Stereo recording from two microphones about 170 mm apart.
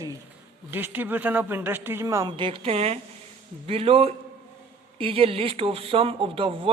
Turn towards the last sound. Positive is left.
turn(degrees=-30)  # may be behind; listen again after turning